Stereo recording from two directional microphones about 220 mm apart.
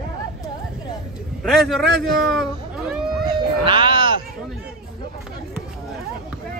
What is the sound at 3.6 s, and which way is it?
Sheep, 20° right (ahead or behind).